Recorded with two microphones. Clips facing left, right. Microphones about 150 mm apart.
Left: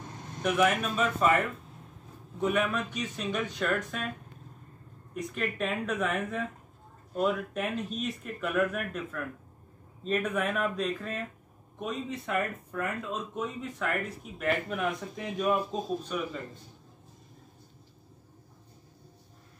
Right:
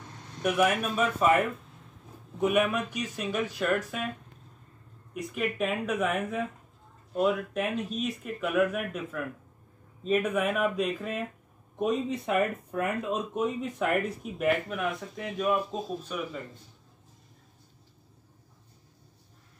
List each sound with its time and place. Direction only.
0.4 s speech: 5° right (ahead or behind)
5.1 s speech: 5° right (ahead or behind)
14.5 s speech: 5° right (ahead or behind)